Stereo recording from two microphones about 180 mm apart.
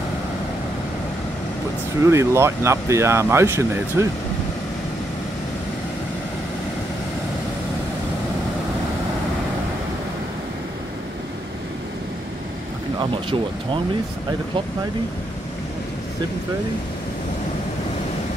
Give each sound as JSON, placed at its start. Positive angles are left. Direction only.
{"t": 2.0, "sound": "speech", "side_deg": -15}
{"t": 13.0, "sound": "speech", "side_deg": -30}